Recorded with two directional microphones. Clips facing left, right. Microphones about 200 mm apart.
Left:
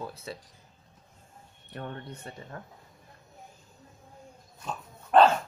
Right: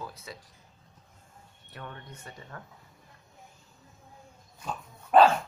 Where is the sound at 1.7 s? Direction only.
40° left (ahead or behind).